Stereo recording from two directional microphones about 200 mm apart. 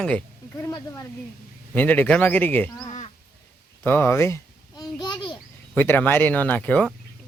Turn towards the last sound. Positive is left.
turn(degrees=5)  # may be behind; listen again after turning